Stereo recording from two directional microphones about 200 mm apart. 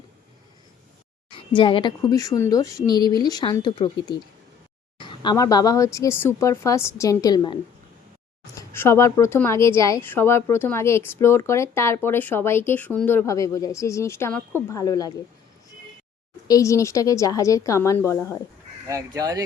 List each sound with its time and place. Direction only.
1.3 s a woman's voice: 25° left (ahead or behind)
8.7 s a woman's voice: 10° left (ahead or behind)
16.5 s a woman's voice: 15° left (ahead or behind)
18.9 s speech: 15° right (ahead or behind)